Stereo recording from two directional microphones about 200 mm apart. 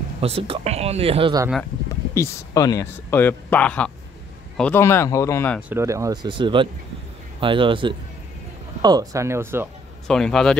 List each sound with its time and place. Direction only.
0.2 s speech: 30° right (ahead or behind)
2.1 s speech: 20° left (ahead or behind)
5.7 s speech: 15° right (ahead or behind)
10.0 s speech: 5° left (ahead or behind)